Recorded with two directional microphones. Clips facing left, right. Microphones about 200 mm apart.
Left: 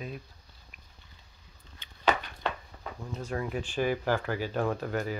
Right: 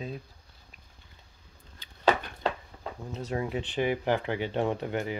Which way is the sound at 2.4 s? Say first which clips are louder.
Right 3 dB; 25° right (ahead or behind).